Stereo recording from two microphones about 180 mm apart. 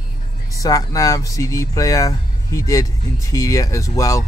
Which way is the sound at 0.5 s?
20° left (ahead or behind).